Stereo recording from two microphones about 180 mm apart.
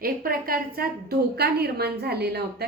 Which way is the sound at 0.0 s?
55° right (ahead or behind).